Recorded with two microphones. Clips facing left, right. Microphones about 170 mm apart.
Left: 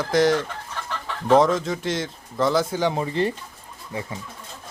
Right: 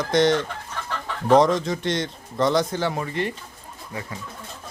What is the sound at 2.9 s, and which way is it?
Speech, 30° left (ahead or behind).